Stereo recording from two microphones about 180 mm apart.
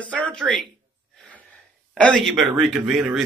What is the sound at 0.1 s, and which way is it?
Speech, 5° left (ahead or behind).